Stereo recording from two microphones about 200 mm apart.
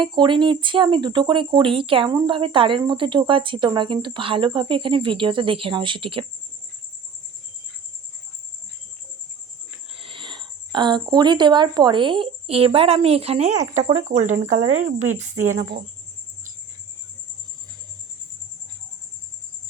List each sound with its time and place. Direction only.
0.0 s speech: 25° right (ahead or behind)
9.9 s speech: 25° right (ahead or behind)